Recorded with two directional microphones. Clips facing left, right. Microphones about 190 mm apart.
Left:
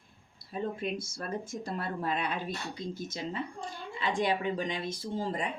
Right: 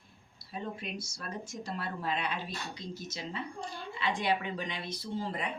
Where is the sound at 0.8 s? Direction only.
50° left (ahead or behind).